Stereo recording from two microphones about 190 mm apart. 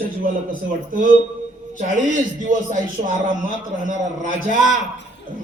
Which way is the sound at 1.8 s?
40° right (ahead or behind).